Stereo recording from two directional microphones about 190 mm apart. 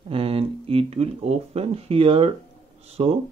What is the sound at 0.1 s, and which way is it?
Speech, 30° right (ahead or behind).